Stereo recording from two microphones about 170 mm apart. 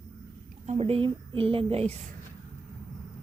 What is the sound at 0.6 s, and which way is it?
A woman's voice, 35° right (ahead or behind).